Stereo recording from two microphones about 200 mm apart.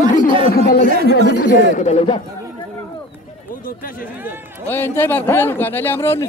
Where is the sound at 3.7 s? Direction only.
45° left (ahead or behind).